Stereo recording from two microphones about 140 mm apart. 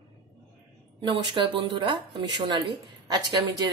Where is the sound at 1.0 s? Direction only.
35° right (ahead or behind).